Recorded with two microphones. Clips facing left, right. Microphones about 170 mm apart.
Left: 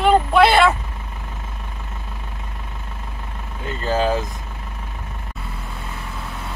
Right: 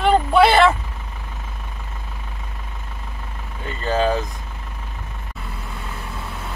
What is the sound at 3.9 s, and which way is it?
Speech, 5° left (ahead or behind).